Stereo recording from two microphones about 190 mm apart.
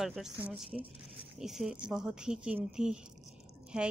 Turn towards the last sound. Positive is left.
turn(degrees=-5)  # may be behind; listen again after turning